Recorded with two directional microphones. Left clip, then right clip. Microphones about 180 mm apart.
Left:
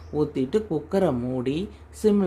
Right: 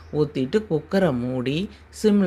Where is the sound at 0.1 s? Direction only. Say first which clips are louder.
Right 2 dB; centre (ahead or behind).